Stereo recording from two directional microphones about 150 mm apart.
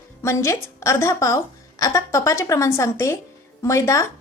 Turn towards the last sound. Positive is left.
turn(degrees=20)  # may be behind; listen again after turning